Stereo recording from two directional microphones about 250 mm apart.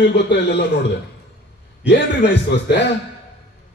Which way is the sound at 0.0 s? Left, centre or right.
Left.